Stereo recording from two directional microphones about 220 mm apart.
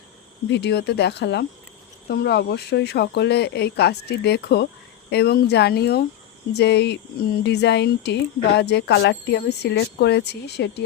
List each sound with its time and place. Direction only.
0.4 s speech: 50° left (ahead or behind)